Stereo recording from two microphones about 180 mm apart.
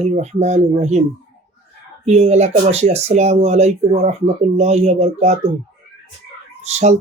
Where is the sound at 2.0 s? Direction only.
35° right (ahead or behind).